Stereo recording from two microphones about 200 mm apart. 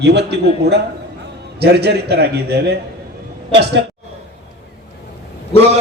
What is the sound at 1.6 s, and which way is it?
A man's voice, 55° right (ahead or behind).